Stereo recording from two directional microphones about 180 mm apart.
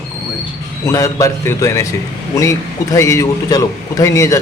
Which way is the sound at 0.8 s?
20° left (ahead or behind).